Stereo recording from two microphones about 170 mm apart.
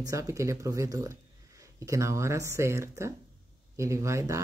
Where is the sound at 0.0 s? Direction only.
20° right (ahead or behind).